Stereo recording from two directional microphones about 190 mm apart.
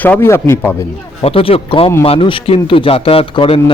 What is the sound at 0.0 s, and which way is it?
Speech, 10° left (ahead or behind).